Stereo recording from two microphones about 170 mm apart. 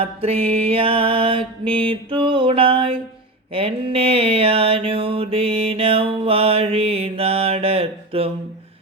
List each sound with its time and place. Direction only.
0.0 s mantra: 35° right (ahead or behind)